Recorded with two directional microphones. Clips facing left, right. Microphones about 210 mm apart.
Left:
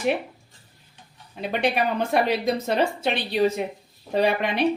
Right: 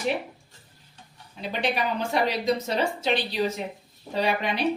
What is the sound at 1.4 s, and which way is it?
Speech, 55° left (ahead or behind).